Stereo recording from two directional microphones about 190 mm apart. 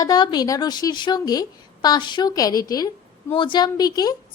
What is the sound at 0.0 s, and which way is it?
A woman's voice, 20° left (ahead or behind).